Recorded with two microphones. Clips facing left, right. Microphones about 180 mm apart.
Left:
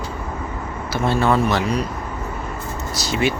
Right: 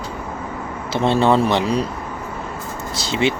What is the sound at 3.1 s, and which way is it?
Speech, 25° right (ahead or behind).